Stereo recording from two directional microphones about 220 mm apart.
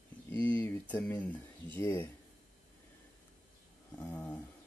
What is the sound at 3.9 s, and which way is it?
Speech, 10° left (ahead or behind).